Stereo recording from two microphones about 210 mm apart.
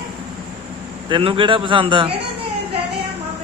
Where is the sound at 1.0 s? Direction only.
25° right (ahead or behind).